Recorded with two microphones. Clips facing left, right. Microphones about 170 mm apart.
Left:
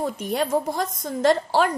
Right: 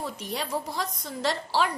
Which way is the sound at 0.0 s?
50° left (ahead or behind).